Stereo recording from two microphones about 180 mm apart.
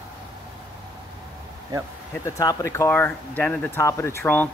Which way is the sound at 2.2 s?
20° left (ahead or behind).